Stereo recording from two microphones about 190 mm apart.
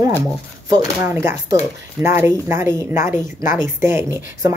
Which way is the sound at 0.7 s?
15° right (ahead or behind).